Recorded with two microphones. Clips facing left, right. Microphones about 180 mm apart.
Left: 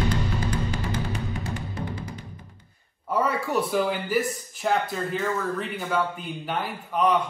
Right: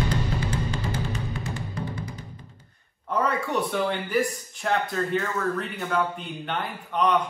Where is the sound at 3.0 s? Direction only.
5° left (ahead or behind).